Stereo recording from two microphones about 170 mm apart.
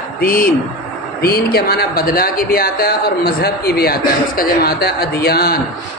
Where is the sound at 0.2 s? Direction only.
55° left (ahead or behind).